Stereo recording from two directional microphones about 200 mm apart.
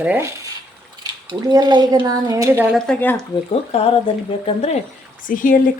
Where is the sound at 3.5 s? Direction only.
30° left (ahead or behind).